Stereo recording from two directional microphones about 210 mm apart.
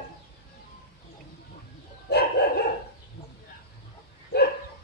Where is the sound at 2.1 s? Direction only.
50° left (ahead or behind).